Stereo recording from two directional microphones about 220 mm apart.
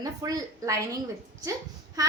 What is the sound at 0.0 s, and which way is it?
Speech, 15° right (ahead or behind).